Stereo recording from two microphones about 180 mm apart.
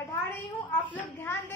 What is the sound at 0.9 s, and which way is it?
Speech, 10° left (ahead or behind).